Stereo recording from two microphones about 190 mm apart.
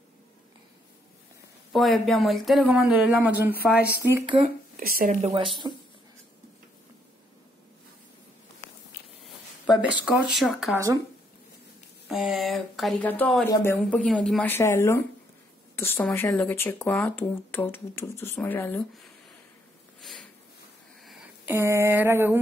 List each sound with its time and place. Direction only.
1.7 s speech: centre (ahead or behind); by 4.4 s 15° right (ahead or behind)
4.4 s speech: 50° right (ahead or behind)
5.2 s speech: 25° right (ahead or behind)
10.0 s speech: 5° right (ahead or behind)
12.1 s speech: centre (ahead or behind)
20.0 s sniff: centre (ahead or behind)
21.5 s speech: 15° right (ahead or behind)